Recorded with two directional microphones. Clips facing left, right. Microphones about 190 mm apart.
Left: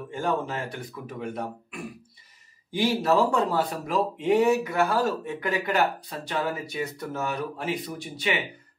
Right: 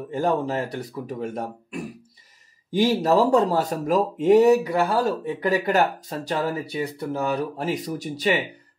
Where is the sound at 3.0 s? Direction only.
40° right (ahead or behind).